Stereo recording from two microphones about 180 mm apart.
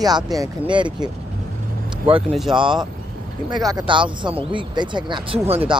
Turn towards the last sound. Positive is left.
turn(degrees=-35)  # may be behind; listen again after turning